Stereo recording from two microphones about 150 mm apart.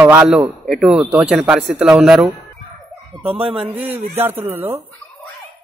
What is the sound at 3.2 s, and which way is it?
Speech, 40° right (ahead or behind).